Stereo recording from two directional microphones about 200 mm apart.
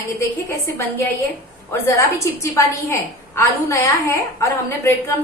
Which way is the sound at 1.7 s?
15° left (ahead or behind).